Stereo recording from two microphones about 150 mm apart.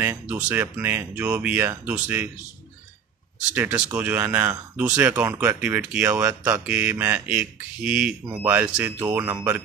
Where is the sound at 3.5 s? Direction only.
10° right (ahead or behind).